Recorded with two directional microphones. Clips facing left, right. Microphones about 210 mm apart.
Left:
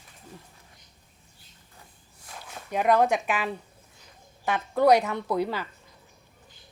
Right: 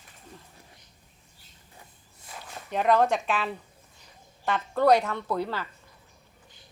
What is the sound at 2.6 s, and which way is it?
Speech, 10° left (ahead or behind).